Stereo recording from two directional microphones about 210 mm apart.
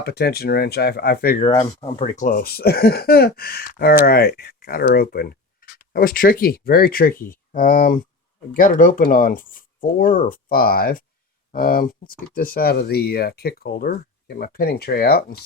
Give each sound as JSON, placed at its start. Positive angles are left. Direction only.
{"t": 0.0, "sound": "speech", "side_deg": 50}
{"t": 1.5, "sound": "speech", "side_deg": 25}
{"t": 2.1, "sound": "speech", "side_deg": 40}